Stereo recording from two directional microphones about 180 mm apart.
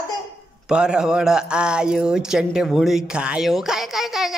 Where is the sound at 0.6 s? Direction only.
5° right (ahead or behind).